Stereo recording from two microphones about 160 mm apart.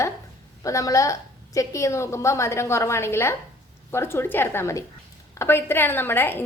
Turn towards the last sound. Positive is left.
turn(degrees=15)  # may be behind; listen again after turning